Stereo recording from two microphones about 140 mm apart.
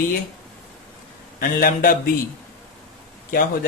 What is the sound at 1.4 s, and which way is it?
Speech, 90° left.